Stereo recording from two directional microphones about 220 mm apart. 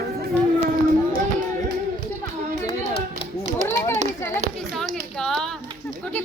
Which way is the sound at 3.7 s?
10° left (ahead or behind).